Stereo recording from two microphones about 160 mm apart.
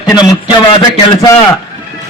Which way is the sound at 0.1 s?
25° left (ahead or behind).